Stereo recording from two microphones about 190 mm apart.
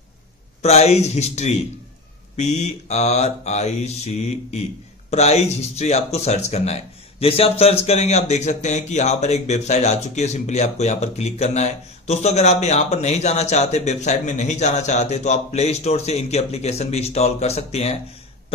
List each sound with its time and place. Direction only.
0.6 s speech: 35° left (ahead or behind)